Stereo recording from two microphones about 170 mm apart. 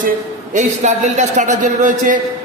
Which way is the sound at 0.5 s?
45° right (ahead or behind).